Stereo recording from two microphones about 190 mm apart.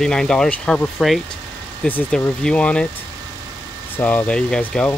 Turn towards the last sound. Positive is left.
turn(degrees=5)  # may be behind; listen again after turning